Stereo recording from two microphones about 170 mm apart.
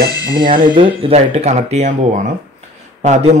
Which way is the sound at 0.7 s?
30° right (ahead or behind).